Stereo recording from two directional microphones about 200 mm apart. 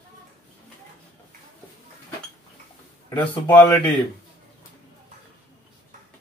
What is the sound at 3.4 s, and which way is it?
Speech, 10° left (ahead or behind).